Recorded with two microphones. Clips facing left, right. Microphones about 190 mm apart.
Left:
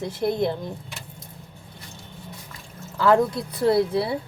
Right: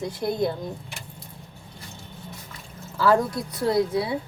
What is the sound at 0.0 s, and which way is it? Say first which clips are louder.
Speech: left 2 dB; 25° left (ahead or behind).